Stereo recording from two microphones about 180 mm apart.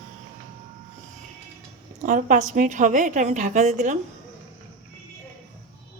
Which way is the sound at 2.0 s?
45° right (ahead or behind).